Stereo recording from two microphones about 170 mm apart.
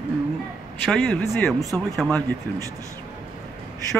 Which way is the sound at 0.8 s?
5° left (ahead or behind).